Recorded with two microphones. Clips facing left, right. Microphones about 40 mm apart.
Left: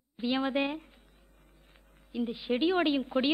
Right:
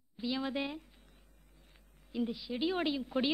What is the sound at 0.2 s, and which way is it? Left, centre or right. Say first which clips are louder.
Speech: left 6 dB; left.